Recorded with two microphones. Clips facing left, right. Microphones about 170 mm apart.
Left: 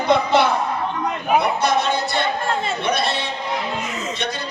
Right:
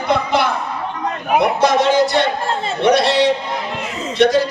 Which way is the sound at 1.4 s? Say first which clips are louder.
Right 8 dB; 90° right.